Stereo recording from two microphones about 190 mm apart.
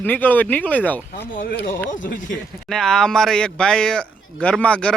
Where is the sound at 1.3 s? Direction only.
50° left (ahead or behind).